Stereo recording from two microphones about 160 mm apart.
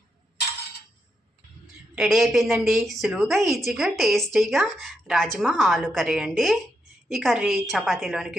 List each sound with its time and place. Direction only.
1.6 s a woman's voice: centre (ahead or behind)